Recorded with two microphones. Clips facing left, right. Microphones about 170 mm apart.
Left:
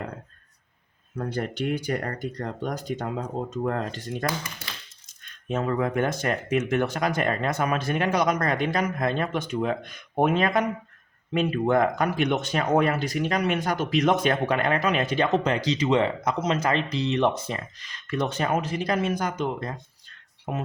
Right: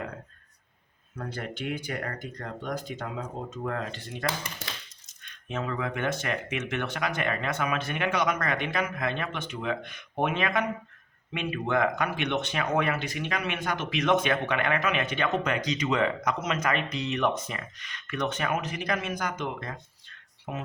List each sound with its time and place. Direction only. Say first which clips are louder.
1.1 s speech: left 6 dB; 40° left (ahead or behind)
5.5 s speech: left 6 dB; 45° left (ahead or behind)
20.4 s speech: left 5 dB; 45° left (ahead or behind)